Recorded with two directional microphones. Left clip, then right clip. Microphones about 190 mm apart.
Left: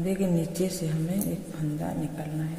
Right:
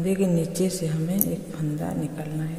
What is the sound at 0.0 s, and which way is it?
A man's voice, 20° right (ahead or behind).